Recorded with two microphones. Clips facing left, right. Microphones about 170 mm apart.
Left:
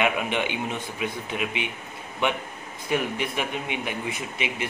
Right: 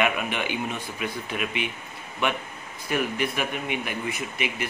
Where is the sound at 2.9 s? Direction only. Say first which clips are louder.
Even; 20° left (ahead or behind).